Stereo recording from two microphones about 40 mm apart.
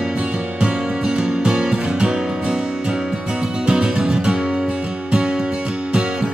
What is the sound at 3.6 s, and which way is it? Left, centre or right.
Music, right.